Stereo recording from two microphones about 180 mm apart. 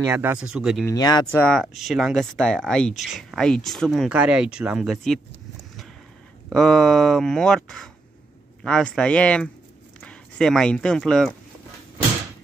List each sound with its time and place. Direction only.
0.0 s speech: 15° right (ahead or behind)
0.8 s speech: 20° left (ahead or behind)
1.3 s speech: 5° left (ahead or behind)
6.5 s speech: 5° left (ahead or behind)